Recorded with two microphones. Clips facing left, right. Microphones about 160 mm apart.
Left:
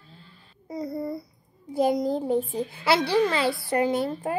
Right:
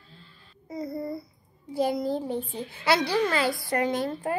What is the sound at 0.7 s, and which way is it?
Babbling, 35° left (ahead or behind).